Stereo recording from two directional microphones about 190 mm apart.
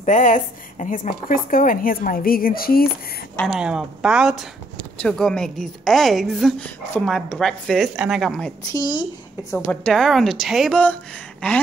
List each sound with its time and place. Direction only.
0.0 s speech: 40° left (ahead or behind)
3.3 s a woman's voice: centre (ahead or behind)
8.7 s speech: 20° left (ahead or behind)
9.6 s a woman's voice: 5° left (ahead or behind)
11.4 s a sound: 5° left (ahead or behind)